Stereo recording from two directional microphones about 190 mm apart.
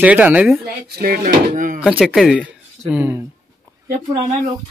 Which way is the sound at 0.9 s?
50° right (ahead or behind).